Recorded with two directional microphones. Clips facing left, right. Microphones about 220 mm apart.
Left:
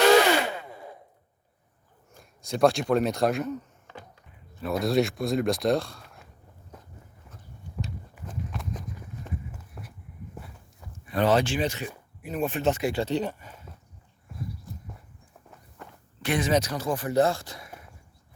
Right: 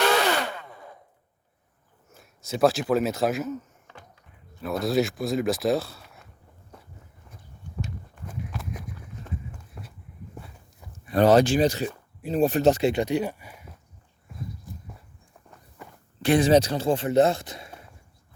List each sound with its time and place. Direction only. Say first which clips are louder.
2.1 s speech: even; 5° right (ahead or behind)
4.6 s speech: even; centre (ahead or behind)
8.3 s walk: even; 10° right (ahead or behind)
9.8 s vehicle: even; 5° left (ahead or behind)
10.4 s walk: right 1 dB; 5° left (ahead or behind)
11.1 s speech: right 5 dB; 40° right (ahead or behind)
12.8 s speech: right 3 dB; 20° right (ahead or behind)
16.2 s speech: right 6 dB; 30° right (ahead or behind)